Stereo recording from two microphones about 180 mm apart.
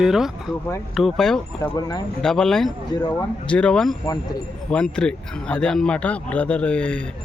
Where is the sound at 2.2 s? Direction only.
5° left (ahead or behind).